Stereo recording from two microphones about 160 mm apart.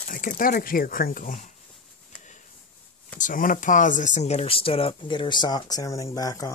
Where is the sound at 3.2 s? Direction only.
55° left (ahead or behind).